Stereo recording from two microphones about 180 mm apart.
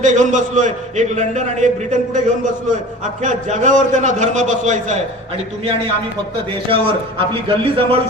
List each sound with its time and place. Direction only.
0.0 s a man's voice: 45° right (ahead or behind)
6.7 s a man's voice: 30° right (ahead or behind)